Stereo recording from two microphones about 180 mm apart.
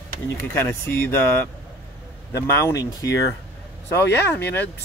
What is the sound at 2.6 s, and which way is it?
Speech, 15° left (ahead or behind).